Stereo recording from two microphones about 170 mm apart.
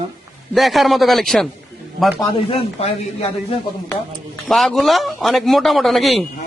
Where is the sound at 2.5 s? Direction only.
40° left (ahead or behind).